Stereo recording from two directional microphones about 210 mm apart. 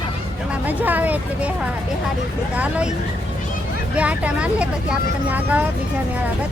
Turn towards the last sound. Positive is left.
turn(degrees=-10)  # may be behind; listen again after turning